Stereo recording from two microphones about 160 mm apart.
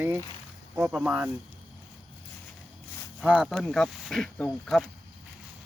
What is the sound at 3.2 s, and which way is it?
Speech, 5° right (ahead or behind).